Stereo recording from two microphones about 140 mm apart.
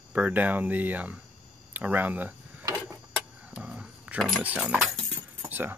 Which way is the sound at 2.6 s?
25° right (ahead or behind).